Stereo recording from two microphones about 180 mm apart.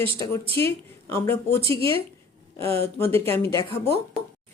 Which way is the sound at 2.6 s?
15° left (ahead or behind).